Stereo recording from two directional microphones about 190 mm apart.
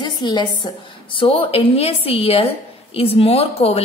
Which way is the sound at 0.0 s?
25° left (ahead or behind).